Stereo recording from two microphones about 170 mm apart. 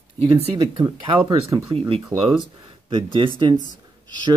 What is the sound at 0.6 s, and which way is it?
Speech, 30° right (ahead or behind).